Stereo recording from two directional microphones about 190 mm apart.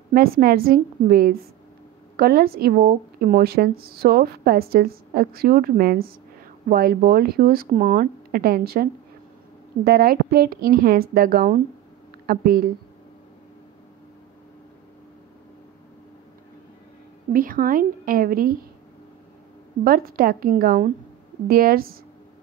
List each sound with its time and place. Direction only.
0.1 s speech: 50° right (ahead or behind)
9.8 s speech: 50° right (ahead or behind)
17.3 s speech: 50° right (ahead or behind)
19.8 s speech: 50° right (ahead or behind)